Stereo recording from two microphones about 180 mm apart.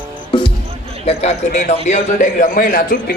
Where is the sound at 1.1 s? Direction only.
40° left (ahead or behind).